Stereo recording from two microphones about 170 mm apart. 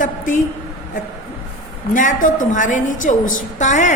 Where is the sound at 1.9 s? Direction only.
50° left (ahead or behind).